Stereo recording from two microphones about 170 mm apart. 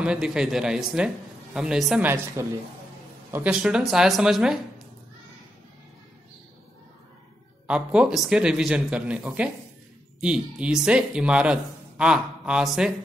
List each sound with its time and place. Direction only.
0.0 s speech: 5° right (ahead or behind)
2.4 s a man's voice: 15° right (ahead or behind)
7.6 s speech: 5° right (ahead or behind)